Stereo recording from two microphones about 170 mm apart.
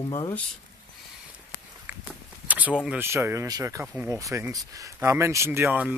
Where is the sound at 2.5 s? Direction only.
10° right (ahead or behind).